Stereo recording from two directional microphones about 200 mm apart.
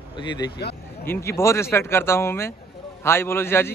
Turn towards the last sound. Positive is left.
turn(degrees=10)  # may be behind; listen again after turning